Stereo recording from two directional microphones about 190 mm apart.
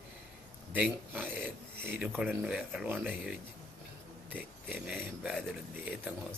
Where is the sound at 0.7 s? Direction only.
10° right (ahead or behind).